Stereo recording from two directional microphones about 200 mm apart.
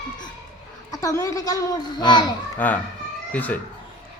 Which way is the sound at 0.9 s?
15° left (ahead or behind).